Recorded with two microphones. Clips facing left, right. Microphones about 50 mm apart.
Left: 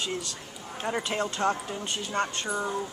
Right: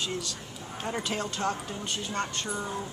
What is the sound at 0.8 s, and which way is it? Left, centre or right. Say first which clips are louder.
Speech: left 3 dB; centre.